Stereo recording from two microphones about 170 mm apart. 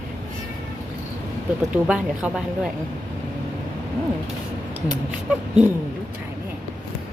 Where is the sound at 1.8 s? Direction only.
5° right (ahead or behind).